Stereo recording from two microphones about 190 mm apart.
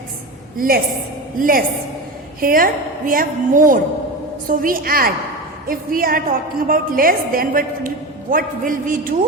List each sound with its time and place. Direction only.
0.5 s a woman's voice: 50° right (ahead or behind)